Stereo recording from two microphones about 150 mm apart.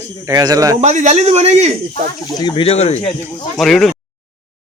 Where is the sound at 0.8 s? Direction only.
50° right (ahead or behind).